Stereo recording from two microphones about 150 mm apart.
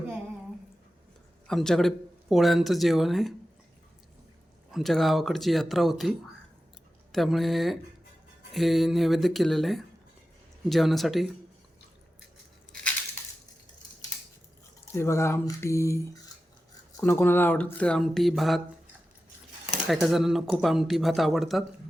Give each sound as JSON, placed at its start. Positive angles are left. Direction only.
{"t": 1.5, "sound": "speech", "side_deg": 5}
{"t": 4.7, "sound": "speech", "side_deg": 0}
{"t": 14.9, "sound": "speech", "side_deg": 20}
{"t": 19.9, "sound": "speech", "side_deg": 0}